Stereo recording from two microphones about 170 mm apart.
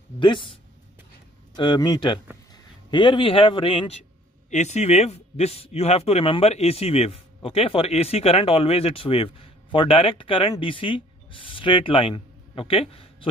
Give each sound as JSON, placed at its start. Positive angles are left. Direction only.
{"t": 0.2, "sound": "speech", "side_deg": 30}
{"t": 1.6, "sound": "a man's voice", "side_deg": 25}
{"t": 4.5, "sound": "a man's voice", "side_deg": 40}